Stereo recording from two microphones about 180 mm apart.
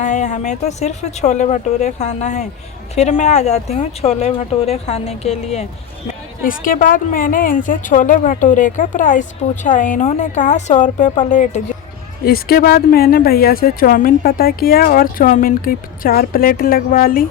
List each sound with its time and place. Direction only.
0.0 s speech: 40° left (ahead or behind)
6.4 s a woman's voice: 50° left (ahead or behind)
12.2 s speech: 60° left (ahead or behind)